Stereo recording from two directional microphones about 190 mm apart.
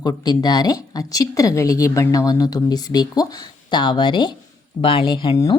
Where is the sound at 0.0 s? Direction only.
20° left (ahead or behind).